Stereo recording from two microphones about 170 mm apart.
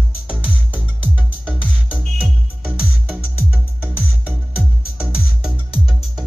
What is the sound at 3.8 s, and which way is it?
Music, 5° right (ahead or behind).